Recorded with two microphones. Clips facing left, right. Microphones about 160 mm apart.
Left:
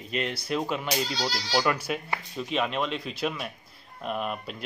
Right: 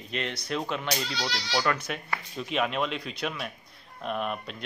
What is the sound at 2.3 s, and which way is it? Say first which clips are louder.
Speech: even; centre (ahead or behind).